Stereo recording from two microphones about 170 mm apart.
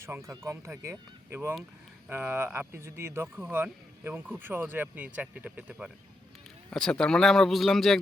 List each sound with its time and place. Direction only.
0.0 s speech: 15° right (ahead or behind)
6.7 s speech: 5° left (ahead or behind)